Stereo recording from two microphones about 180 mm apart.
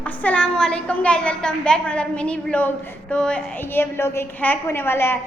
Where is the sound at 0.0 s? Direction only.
10° left (ahead or behind).